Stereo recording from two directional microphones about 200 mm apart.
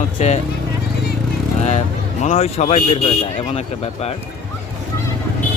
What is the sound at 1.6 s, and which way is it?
Speech, 35° left (ahead or behind).